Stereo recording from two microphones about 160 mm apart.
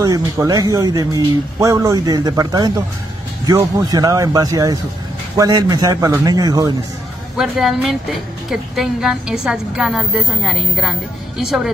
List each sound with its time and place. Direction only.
0.0 s speech: 20° right (ahead or behind)
7.3 s a woman's voice: centre (ahead or behind)